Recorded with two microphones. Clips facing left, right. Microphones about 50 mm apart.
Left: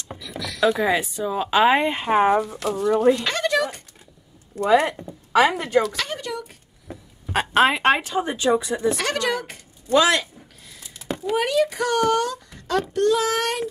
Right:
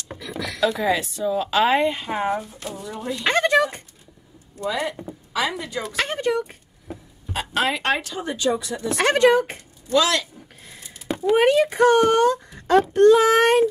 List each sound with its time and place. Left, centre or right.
0.2 s a sound: right
0.6 s speech: centre
2.0 s speech: left
2.4 s speech: left
2.8 s speech: left
3.3 s speech: right
4.6 s speech: left
5.9 s a child's voice: right
7.5 s speech: left
8.9 s a child's voice: right
9.8 s speech: left
11.2 s a child's voice: right